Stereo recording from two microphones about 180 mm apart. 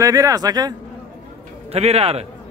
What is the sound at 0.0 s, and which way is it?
Speech, 20° right (ahead or behind).